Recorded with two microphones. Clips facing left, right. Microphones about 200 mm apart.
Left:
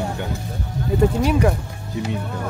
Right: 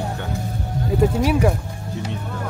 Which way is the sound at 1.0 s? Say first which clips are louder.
Even; 5° right (ahead or behind).